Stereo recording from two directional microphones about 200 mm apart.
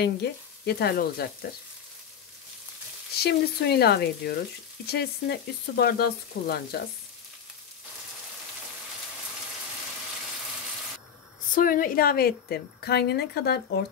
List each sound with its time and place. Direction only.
0.0 s a woman's voice: 55° left (ahead or behind)
3.2 s a woman's voice: 55° left (ahead or behind)
11.5 s a woman's voice: 45° left (ahead or behind)